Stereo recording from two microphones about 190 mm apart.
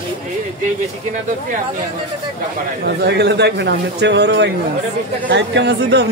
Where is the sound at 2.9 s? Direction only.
60° right (ahead or behind).